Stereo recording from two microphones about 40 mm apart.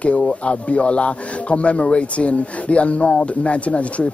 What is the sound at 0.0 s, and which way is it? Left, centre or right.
Speech, left.